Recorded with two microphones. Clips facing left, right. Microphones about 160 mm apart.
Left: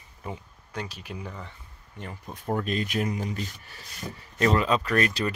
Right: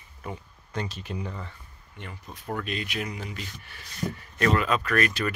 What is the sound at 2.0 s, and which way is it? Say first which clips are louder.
Speech: left 3 dB; 40° left (ahead or behind).